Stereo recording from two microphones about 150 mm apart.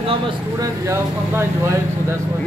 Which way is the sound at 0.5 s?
20° right (ahead or behind).